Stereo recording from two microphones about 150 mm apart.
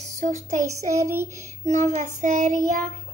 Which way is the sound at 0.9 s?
20° right (ahead or behind).